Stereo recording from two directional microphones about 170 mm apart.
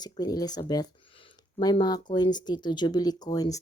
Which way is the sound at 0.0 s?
25° left (ahead or behind).